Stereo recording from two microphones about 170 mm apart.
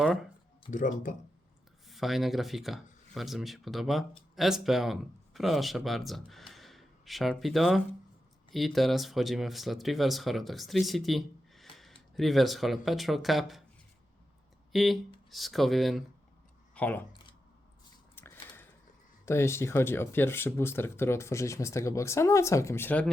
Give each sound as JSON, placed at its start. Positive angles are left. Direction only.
{"t": 0.0, "sound": "speech", "side_deg": 0}
{"t": 0.7, "sound": "speech", "side_deg": 50}
{"t": 1.9, "sound": "speech", "side_deg": 0}
{"t": 14.7, "sound": "speech", "side_deg": 0}
{"t": 18.1, "sound": "a sound", "side_deg": 15}
{"t": 19.2, "sound": "speech", "side_deg": 15}